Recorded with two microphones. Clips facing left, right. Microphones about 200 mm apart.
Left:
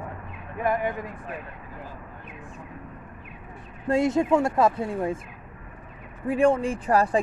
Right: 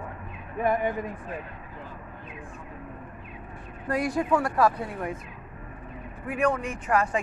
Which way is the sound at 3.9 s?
25° left (ahead or behind).